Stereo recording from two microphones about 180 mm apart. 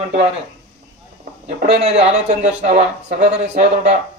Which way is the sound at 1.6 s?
35° right (ahead or behind).